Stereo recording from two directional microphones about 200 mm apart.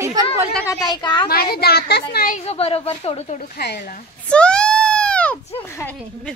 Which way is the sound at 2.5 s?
30° left (ahead or behind).